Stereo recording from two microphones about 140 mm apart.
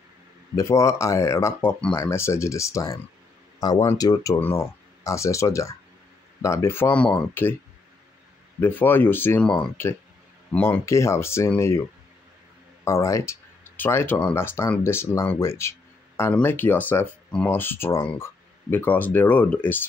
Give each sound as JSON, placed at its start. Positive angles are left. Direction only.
{"t": 0.6, "sound": "speech", "side_deg": 20}
{"t": 8.5, "sound": "speech", "side_deg": 15}
{"t": 12.8, "sound": "speech", "side_deg": 20}